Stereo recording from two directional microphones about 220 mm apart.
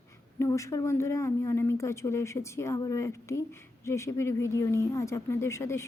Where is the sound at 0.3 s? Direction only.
15° left (ahead or behind).